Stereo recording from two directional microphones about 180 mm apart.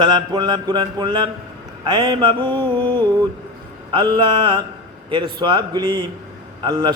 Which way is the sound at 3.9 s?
25° right (ahead or behind).